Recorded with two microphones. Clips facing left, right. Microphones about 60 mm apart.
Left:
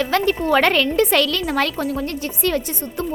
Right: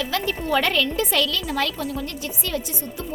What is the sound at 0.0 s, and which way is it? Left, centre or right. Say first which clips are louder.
A woman's voice: left 7 dB; left.